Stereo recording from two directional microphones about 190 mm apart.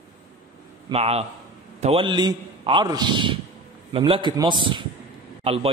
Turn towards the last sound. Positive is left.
turn(degrees=-30)  # may be behind; listen again after turning